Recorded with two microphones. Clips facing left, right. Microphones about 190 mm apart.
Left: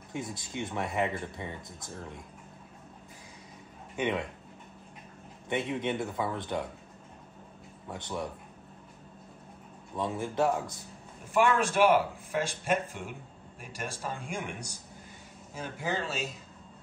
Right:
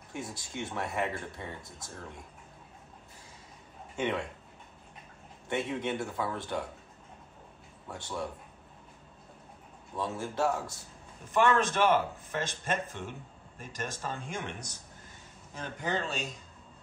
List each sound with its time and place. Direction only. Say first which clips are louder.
0.1 s speech: left 3 dB; 20° left (ahead or behind)
3.9 s speech: left 1 dB; 15° left (ahead or behind)
5.5 s speech: left 1 dB; 20° left (ahead or behind)
7.9 s speech: left 1 dB; 20° left (ahead or behind)
9.9 s speech: left 3 dB; 20° left (ahead or behind); by 16.3 s 5° left (ahead or behind)